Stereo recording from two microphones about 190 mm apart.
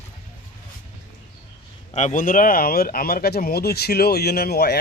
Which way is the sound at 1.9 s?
40° left (ahead or behind).